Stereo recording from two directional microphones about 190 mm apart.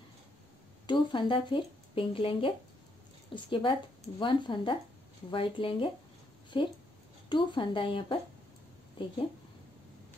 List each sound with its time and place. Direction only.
0.8 s a woman's voice: 25° left (ahead or behind)